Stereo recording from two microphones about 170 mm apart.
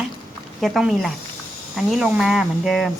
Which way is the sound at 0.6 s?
Centre (ahead or behind).